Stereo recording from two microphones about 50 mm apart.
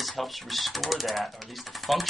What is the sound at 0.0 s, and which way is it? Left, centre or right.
Speech, centre.